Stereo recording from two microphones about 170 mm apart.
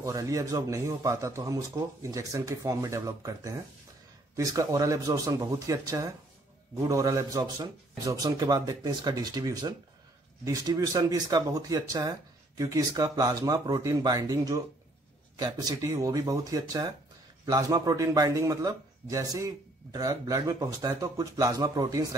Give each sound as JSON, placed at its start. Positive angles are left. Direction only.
{"t": 0.0, "sound": "a man's voice", "side_deg": -20}